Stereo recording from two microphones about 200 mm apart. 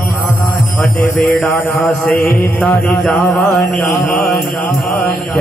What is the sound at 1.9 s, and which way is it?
Mantra, 5° left (ahead or behind).